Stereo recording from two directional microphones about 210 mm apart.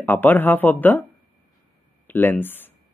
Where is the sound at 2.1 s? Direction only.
10° left (ahead or behind).